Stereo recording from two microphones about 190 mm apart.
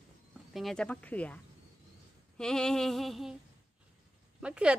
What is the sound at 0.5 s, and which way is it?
A woman's voice, centre (ahead or behind).